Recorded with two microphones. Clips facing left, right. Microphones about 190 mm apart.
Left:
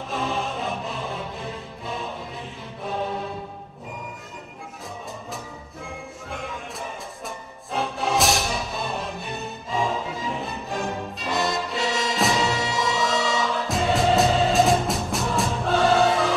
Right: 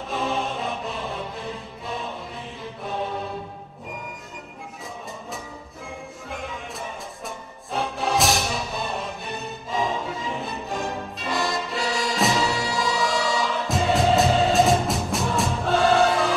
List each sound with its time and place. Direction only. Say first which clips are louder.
0.1 s music: right 1 dB; centre (ahead or behind)
6.3 s music: even; centre (ahead or behind)
9.7 s music: even; centre (ahead or behind)
12.4 s music: even; 20° left (ahead or behind)
12.7 s music: even; centre (ahead or behind)